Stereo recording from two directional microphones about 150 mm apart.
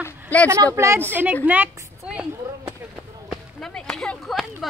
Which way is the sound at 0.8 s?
15° right (ahead or behind).